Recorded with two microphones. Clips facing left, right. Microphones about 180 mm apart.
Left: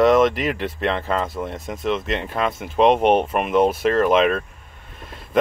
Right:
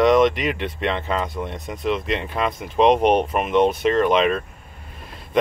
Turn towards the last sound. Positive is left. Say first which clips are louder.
# left 1 dB
turn(degrees=0)  # may be behind; listen again after turning